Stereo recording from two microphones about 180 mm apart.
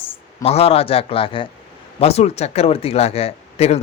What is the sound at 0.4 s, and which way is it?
Speech, 35° left (ahead or behind).